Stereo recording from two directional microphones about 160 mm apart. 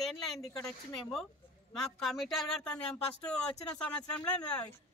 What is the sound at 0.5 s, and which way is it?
Speech, 20° left (ahead or behind).